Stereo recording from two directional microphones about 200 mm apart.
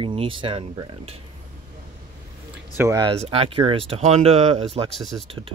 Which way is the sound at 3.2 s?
30° right (ahead or behind).